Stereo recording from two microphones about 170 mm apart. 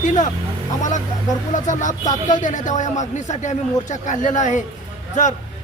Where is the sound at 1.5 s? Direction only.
45° left (ahead or behind).